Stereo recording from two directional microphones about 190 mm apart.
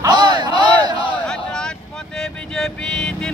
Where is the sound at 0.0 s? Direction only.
20° right (ahead or behind).